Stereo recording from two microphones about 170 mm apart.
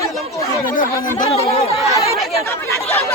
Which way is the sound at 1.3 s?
35° left (ahead or behind).